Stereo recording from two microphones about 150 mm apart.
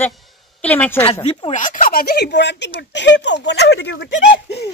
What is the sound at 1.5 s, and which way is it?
Speech, 60° left (ahead or behind).